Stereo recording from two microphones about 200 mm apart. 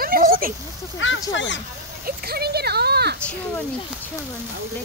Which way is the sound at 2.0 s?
50° right (ahead or behind).